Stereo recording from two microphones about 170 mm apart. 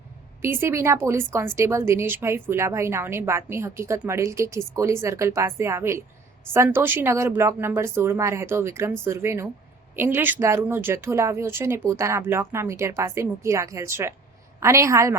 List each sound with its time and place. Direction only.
0.4 s a woman's voice: 15° right (ahead or behind)